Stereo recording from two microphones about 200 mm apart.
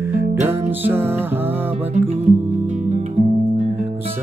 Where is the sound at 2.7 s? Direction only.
35° right (ahead or behind).